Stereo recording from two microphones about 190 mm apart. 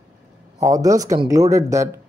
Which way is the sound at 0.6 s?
15° right (ahead or behind).